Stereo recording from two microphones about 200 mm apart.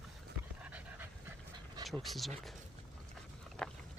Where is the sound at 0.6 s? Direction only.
5° right (ahead or behind).